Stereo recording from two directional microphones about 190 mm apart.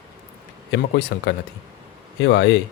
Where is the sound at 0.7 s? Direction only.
60° left (ahead or behind).